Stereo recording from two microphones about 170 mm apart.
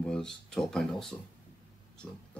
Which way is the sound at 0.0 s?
5° left (ahead or behind).